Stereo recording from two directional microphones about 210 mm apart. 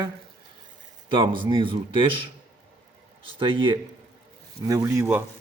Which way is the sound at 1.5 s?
25° right (ahead or behind).